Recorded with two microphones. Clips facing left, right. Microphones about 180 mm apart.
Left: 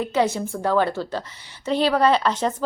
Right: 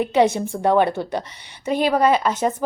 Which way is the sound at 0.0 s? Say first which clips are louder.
Right 4 dB; 20° right (ahead or behind).